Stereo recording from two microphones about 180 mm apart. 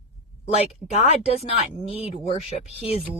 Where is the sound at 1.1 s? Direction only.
35° left (ahead or behind).